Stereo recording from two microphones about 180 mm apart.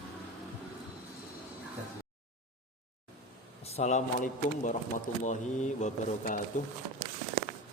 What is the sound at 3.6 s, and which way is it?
Speech, 35° left (ahead or behind).